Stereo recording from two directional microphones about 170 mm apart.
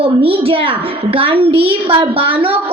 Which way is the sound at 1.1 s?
30° right (ahead or behind).